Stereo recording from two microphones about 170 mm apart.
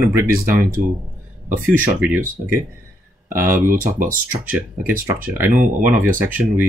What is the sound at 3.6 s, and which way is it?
Speech, 55° right (ahead or behind).